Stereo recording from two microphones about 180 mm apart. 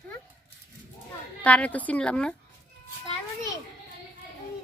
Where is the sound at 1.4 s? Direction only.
10° left (ahead or behind).